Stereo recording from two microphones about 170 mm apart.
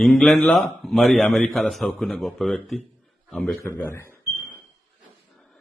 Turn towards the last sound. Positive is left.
turn(degrees=15)  # may be behind; listen again after turning